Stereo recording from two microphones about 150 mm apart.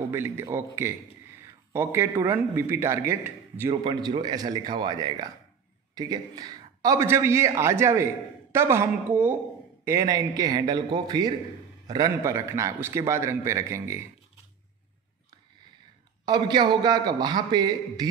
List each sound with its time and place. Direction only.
0.1 s a man's voice: 15° right (ahead or behind)
1.7 s a man's voice: 15° right (ahead or behind)
3.8 s a man's voice: 30° right (ahead or behind); by 9.4 s 10° right (ahead or behind)
9.8 s a man's voice: 25° right (ahead or behind)
16.3 s a man's voice: 30° right (ahead or behind)